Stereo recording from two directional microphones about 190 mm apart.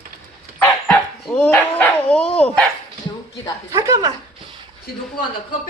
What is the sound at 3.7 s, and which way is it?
Speech, 20° right (ahead or behind).